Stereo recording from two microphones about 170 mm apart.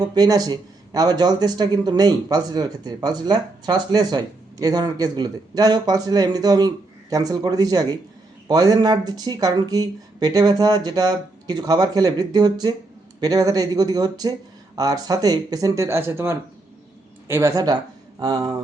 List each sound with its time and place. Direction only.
0.0 s speech: 25° right (ahead or behind)